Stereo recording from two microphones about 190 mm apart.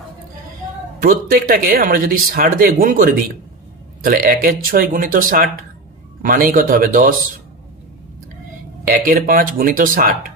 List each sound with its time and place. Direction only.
1.0 s speech: 50° right (ahead or behind)
8.8 s speech: 50° right (ahead or behind)